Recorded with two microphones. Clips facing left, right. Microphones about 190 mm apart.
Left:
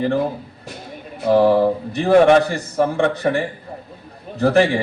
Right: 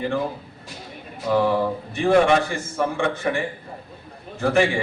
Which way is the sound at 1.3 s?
40° left (ahead or behind).